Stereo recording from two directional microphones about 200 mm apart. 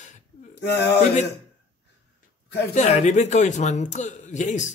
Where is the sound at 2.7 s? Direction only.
35° left (ahead or behind).